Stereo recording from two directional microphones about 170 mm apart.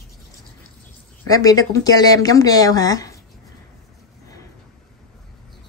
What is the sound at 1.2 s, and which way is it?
A woman's voice, 20° left (ahead or behind).